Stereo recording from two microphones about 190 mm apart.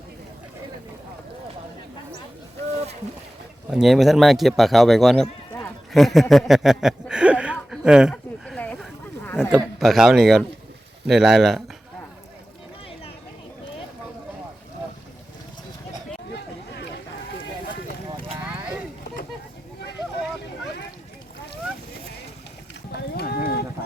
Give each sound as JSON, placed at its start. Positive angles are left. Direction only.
{"t": 3.7, "sound": "speech", "side_deg": 0}
{"t": 8.1, "sound": "a sound", "side_deg": 5}
{"t": 9.7, "sound": "speech", "side_deg": 0}
{"t": 23.0, "sound": "rowboat", "side_deg": 55}